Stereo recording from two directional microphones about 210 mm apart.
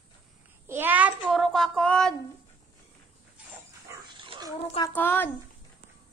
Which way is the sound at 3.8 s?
20° right (ahead or behind).